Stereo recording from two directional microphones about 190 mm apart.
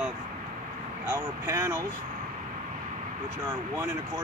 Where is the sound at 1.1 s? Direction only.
15° right (ahead or behind).